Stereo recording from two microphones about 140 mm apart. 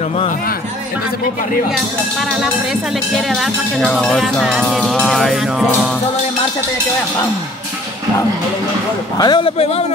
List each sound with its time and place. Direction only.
3.2 s speech: centre (ahead or behind)
9.2 s a man's voice: 30° left (ahead or behind)
9.6 s a man's voice: 45° left (ahead or behind)